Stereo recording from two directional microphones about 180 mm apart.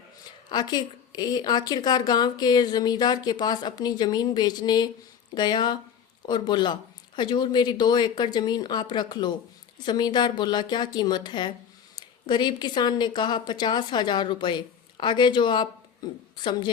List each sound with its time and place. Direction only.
0.5 s speech: 25° left (ahead or behind)